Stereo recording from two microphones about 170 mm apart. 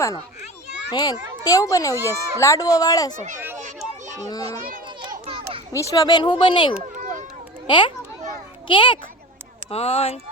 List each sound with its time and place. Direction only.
0.9 s a child's voice: 20° left (ahead or behind)
4.0 s children playing: 45° right (ahead or behind)
4.9 s children playing: 30° right (ahead or behind)
5.7 s a child's voice: 20° left (ahead or behind); by 10.2 s 35° left (ahead or behind)